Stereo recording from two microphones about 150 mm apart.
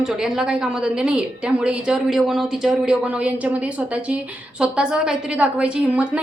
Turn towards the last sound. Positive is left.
turn(degrees=-10)  # may be behind; listen again after turning